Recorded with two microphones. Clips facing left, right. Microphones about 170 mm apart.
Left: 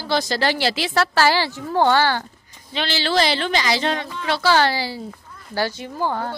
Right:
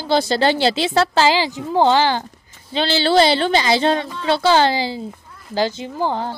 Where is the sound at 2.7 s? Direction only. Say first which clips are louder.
Right 6 dB; 30° right (ahead or behind).